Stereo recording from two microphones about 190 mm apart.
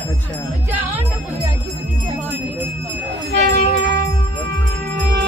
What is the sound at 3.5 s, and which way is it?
Music, 60° right (ahead or behind).